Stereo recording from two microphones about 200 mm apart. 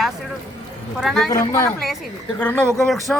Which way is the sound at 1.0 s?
Centre (ahead or behind).